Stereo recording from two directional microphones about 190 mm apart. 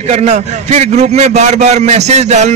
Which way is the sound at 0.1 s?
35° right (ahead or behind).